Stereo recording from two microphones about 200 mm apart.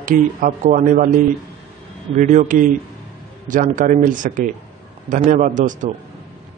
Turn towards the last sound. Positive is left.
turn(degrees=-40)  # may be behind; listen again after turning